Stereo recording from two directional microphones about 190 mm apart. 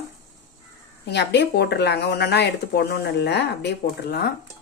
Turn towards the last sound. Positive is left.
turn(degrees=60)  # may be behind; listen again after turning